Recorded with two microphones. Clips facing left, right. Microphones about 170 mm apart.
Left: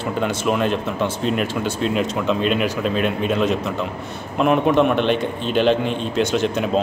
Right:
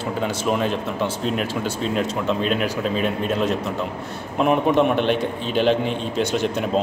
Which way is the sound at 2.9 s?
70° left (ahead or behind).